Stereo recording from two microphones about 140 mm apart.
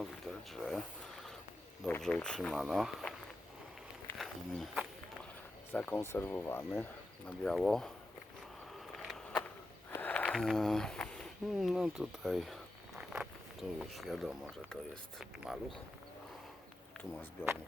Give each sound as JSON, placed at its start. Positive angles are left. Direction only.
{"t": 0.0, "sound": "speech", "side_deg": 0}
{"t": 2.0, "sound": "speech", "side_deg": 5}
{"t": 4.2, "sound": "speech", "side_deg": 0}
{"t": 5.7, "sound": "speech", "side_deg": 15}
{"t": 7.3, "sound": "speech", "side_deg": 5}
{"t": 9.0, "sound": "a sound", "side_deg": 0}
{"t": 9.9, "sound": "speech", "side_deg": 10}
{"t": 17.4, "sound": "speech", "side_deg": 15}